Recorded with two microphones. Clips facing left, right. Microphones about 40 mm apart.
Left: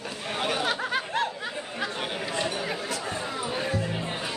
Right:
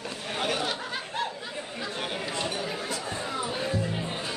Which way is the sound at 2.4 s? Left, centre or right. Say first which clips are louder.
Left 2 dB; left.